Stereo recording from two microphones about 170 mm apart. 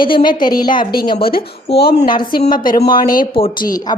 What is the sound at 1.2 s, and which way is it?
Speech, 60° left (ahead or behind).